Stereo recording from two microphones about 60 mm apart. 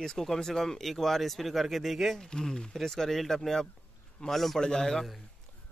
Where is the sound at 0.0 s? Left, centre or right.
Centre.